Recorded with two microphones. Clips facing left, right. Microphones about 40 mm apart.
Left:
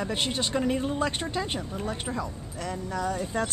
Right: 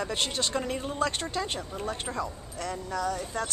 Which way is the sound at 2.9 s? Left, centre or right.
Centre.